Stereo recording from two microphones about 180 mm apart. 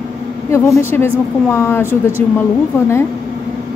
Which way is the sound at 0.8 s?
15° left (ahead or behind).